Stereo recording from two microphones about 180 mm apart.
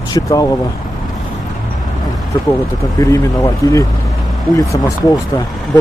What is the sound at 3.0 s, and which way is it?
Speech, 20° left (ahead or behind).